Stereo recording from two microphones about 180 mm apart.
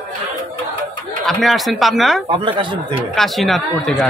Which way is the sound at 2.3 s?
25° right (ahead or behind).